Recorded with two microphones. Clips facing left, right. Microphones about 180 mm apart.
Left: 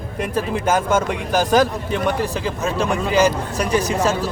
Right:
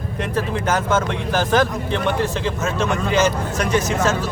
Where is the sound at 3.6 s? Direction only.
35° left (ahead or behind).